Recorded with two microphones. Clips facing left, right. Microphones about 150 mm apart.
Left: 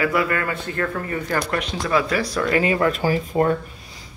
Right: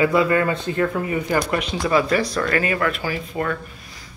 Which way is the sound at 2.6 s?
25° left (ahead or behind).